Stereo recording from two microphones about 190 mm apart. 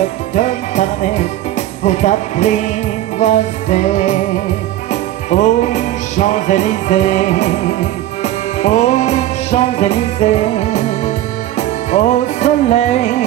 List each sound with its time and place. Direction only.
0.3 s music: 40° left (ahead or behind)
5.3 s music: 40° left (ahead or behind)